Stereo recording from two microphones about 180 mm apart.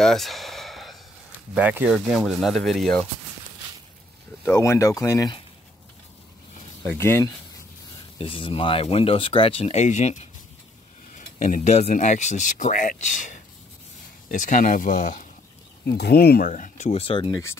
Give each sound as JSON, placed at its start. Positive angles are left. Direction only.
{"t": 0.0, "sound": "a sound", "side_deg": 0}
{"t": 1.5, "sound": "speech", "side_deg": -10}
{"t": 4.5, "sound": "speech", "side_deg": 15}
{"t": 6.8, "sound": "speech", "side_deg": 10}
{"t": 8.2, "sound": "speech", "side_deg": 30}
{"t": 16.0, "sound": "speech", "side_deg": 60}